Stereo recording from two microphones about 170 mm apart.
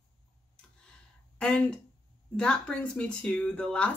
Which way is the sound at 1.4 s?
5° left (ahead or behind).